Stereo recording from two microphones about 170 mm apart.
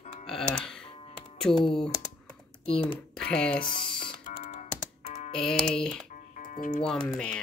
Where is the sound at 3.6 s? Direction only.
30° left (ahead or behind).